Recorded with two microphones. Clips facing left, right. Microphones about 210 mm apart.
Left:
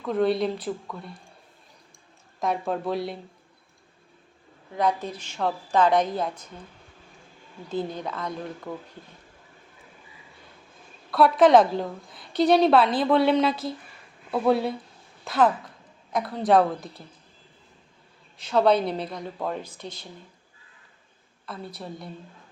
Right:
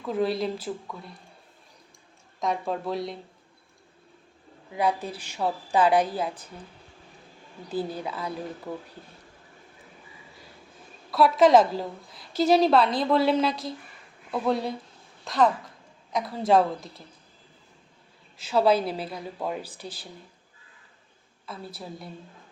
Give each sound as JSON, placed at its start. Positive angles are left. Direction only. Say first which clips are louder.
{"t": 0.0, "sound": "a woman's voice", "louder": "left 3 dB", "side_deg": 0}
{"t": 2.4, "sound": "a woman's voice", "louder": "left 1 dB", "side_deg": 0}
{"t": 4.7, "sound": "speech", "louder": "left 1 dB", "side_deg": -10}
{"t": 7.7, "sound": "speech", "louder": "left 1 dB", "side_deg": -5}
{"t": 11.1, "sound": "a woman's voice", "louder": "left 1 dB", "side_deg": 0}
{"t": 18.3, "sound": "a woman's voice", "louder": "left 1 dB", "side_deg": -5}
{"t": 19.8, "sound": "speech", "louder": "left 1 dB", "side_deg": 30}
{"t": 21.4, "sound": "a woman's voice", "louder": "left 2 dB", "side_deg": 0}